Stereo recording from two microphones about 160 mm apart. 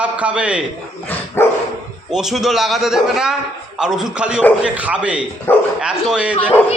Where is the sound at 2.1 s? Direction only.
Centre (ahead or behind).